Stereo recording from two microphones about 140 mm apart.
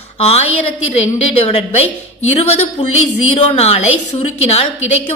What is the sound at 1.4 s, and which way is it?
A woman's voice, 50° left (ahead or behind).